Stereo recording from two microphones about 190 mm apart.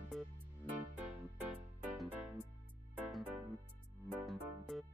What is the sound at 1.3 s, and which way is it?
Music, 10° right (ahead or behind).